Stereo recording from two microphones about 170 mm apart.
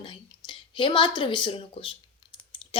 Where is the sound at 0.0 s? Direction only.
30° left (ahead or behind).